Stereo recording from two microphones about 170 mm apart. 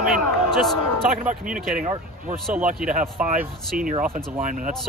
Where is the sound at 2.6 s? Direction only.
50° right (ahead or behind).